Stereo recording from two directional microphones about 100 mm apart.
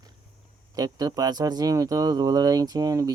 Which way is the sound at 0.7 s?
40° right (ahead or behind).